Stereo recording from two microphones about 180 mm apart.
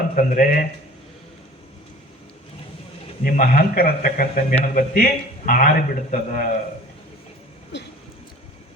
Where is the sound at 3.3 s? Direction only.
55° left (ahead or behind).